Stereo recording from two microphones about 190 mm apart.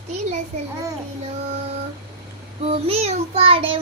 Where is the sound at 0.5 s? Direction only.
35° right (ahead or behind).